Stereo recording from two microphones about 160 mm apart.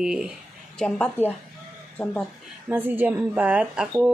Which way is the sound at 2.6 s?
10° right (ahead or behind).